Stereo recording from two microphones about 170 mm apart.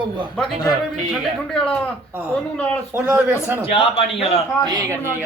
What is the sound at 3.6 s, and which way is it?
Speech, 35° left (ahead or behind).